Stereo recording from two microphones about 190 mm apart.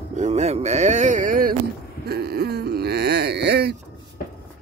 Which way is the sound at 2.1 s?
55° right (ahead or behind).